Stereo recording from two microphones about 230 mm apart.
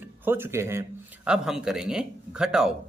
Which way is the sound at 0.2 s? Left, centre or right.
Centre.